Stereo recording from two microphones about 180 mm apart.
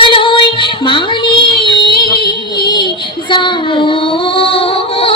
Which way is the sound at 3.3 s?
25° left (ahead or behind).